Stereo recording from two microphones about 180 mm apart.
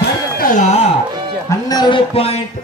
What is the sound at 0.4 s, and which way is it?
Speech, 45° left (ahead or behind).